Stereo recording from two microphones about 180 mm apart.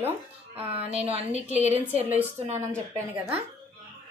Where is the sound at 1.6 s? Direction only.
10° right (ahead or behind).